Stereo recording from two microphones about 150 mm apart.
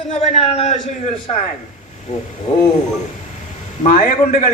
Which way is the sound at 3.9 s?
60° left (ahead or behind).